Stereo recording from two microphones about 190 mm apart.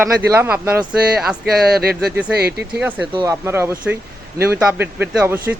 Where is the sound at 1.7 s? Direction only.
55° right (ahead or behind).